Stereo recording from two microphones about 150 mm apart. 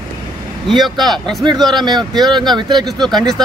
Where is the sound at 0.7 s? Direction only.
Centre (ahead or behind).